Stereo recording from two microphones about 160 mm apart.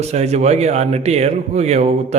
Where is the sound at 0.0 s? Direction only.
45° right (ahead or behind).